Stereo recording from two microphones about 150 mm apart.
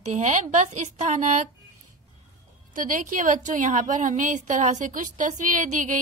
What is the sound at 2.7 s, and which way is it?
A woman's voice, 65° right (ahead or behind).